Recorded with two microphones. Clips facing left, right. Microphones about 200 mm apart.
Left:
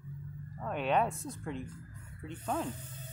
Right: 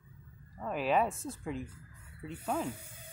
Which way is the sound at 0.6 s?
5° right (ahead or behind).